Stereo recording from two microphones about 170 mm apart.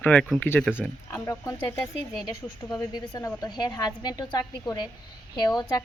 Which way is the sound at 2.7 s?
20° left (ahead or behind).